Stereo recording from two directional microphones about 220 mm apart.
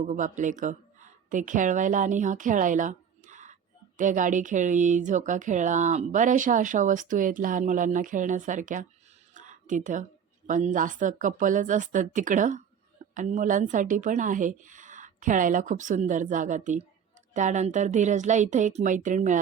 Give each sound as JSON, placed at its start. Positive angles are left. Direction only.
{"t": 0.1, "sound": "a woman's voice", "side_deg": -35}